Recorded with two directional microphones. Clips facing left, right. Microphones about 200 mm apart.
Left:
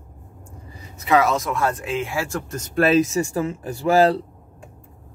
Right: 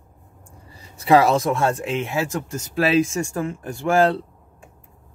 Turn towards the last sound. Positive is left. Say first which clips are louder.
# left 2 dB
turn(degrees=0)  # may be behind; listen again after turning